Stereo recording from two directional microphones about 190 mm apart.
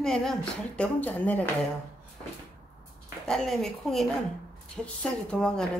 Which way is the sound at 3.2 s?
Centre (ahead or behind).